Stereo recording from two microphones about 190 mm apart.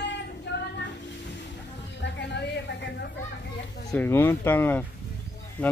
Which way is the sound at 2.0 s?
65° left (ahead or behind).